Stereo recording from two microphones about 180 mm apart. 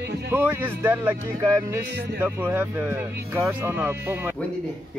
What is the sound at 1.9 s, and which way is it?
Music, 60° right (ahead or behind).